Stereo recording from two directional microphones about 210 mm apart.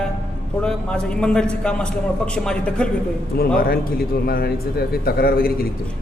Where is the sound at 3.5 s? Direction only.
45° left (ahead or behind).